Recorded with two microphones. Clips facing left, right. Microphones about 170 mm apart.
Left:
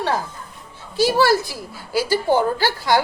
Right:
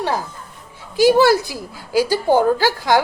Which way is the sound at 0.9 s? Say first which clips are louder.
Right 4 dB; 20° right (ahead or behind).